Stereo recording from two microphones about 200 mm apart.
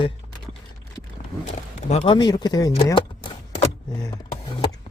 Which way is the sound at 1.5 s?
30° left (ahead or behind).